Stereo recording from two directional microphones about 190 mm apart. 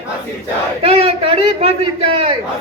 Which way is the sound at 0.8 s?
30° right (ahead or behind).